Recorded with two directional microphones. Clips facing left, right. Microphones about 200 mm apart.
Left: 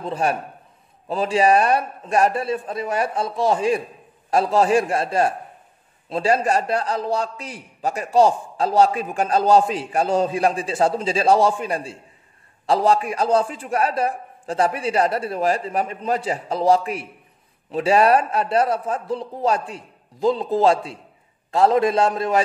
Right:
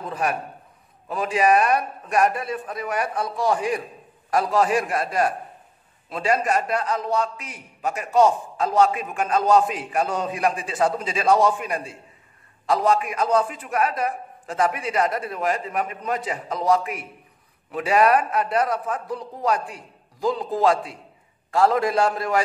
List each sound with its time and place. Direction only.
0.0 s a man's voice: 30° left (ahead or behind)